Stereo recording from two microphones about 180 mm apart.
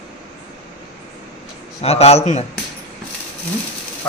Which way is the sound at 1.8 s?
35° left (ahead or behind).